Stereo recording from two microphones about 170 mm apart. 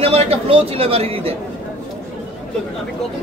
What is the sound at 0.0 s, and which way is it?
Speech, 35° right (ahead or behind).